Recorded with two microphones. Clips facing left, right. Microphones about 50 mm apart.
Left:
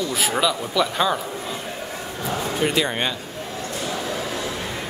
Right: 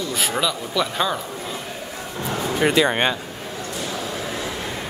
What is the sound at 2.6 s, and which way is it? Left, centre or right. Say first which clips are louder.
Speech: right 5 dB; right.